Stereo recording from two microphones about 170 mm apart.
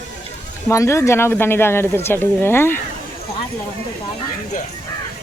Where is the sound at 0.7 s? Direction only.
15° left (ahead or behind).